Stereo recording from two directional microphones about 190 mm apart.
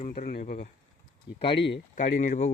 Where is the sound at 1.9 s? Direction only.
40° left (ahead or behind).